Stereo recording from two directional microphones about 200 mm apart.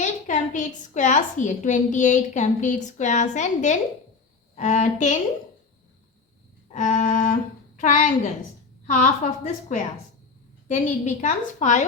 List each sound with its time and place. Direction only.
0.0 s a woman's voice: 40° left (ahead or behind)
6.7 s a woman's voice: 35° left (ahead or behind)